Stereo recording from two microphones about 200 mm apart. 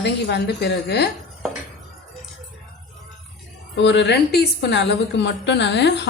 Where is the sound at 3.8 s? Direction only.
60° left (ahead or behind).